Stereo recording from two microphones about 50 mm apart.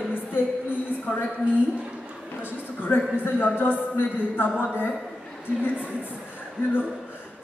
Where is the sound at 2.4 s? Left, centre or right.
Left.